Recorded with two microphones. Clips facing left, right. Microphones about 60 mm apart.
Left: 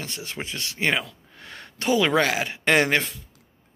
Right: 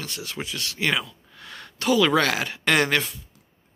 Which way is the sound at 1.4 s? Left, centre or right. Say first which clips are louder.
Right 1 dB; left.